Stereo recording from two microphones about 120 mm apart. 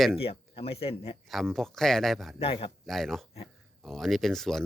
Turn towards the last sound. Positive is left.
turn(degrees=5)  # may be behind; listen again after turning